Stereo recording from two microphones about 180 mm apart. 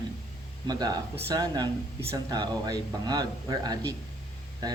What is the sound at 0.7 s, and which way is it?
Speech, 20° right (ahead or behind).